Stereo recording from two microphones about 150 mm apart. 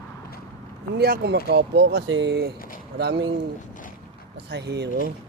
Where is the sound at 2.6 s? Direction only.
70° left (ahead or behind).